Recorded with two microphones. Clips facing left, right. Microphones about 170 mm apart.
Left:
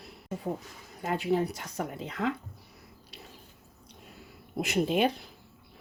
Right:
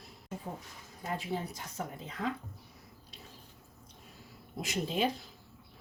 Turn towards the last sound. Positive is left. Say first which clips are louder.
# left 6 dB
turn(degrees=65)  # may be behind; listen again after turning